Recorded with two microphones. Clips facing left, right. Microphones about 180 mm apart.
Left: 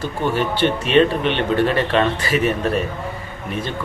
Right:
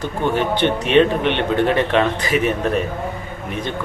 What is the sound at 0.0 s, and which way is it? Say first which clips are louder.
Speech: right 1 dB; 20° right (ahead or behind).